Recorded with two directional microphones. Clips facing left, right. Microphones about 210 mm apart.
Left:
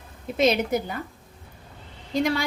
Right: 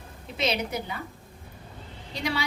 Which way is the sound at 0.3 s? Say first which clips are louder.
Left 7 dB; 45° left (ahead or behind).